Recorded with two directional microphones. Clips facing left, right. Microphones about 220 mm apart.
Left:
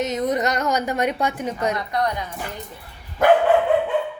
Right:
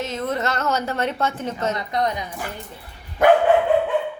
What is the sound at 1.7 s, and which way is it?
Speech, 20° right (ahead or behind).